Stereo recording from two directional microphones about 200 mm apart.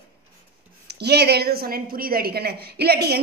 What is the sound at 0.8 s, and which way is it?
A woman's voice, 55° right (ahead or behind).